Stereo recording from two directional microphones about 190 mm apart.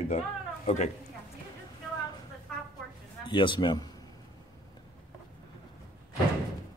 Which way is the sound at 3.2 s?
25° left (ahead or behind).